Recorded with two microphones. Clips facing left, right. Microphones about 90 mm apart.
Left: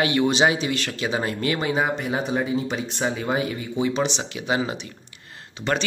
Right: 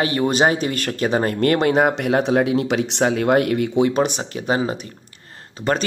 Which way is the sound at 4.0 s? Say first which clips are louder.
Right 5 dB; 45° right (ahead or behind).